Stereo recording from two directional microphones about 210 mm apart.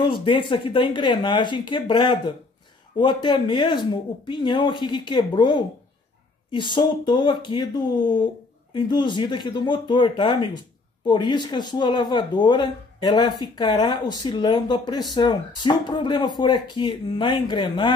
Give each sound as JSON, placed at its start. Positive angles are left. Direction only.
{"t": 0.0, "sound": "speech", "side_deg": 25}